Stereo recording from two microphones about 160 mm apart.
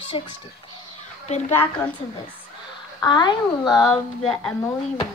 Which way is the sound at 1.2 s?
45° left (ahead or behind).